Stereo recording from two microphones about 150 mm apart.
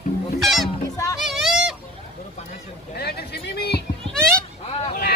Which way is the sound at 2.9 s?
90° left.